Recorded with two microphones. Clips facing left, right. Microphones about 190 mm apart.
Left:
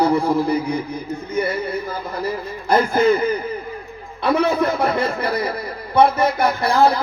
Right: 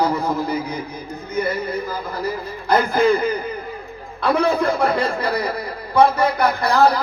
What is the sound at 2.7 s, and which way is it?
Speech, 25° left (ahead or behind).